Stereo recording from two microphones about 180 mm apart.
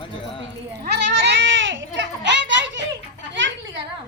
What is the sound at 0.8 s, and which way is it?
Goat, 65° right (ahead or behind).